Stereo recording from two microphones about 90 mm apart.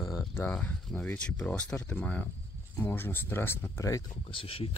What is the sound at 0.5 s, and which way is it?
Speech, 15° left (ahead or behind).